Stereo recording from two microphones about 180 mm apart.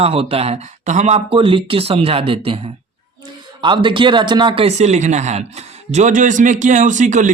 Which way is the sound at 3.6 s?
25° right (ahead or behind).